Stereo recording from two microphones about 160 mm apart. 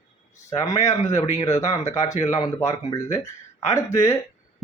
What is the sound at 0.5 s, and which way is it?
Speech, 20° left (ahead or behind).